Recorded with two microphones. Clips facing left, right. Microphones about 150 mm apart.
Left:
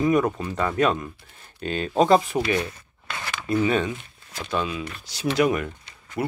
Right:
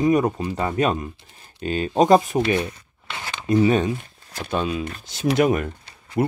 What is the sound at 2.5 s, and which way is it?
Speech, 25° right (ahead or behind).